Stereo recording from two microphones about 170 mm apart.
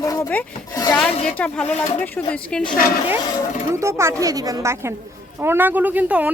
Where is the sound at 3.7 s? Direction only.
15° right (ahead or behind).